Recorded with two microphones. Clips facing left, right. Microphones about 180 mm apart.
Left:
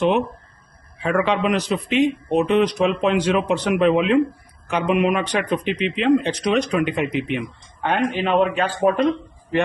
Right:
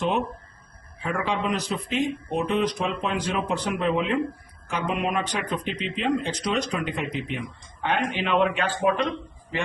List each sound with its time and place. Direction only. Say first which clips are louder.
1.2 s speech: left 5 dB; 75° left (ahead or behind); by 9.0 s 45° left (ahead or behind)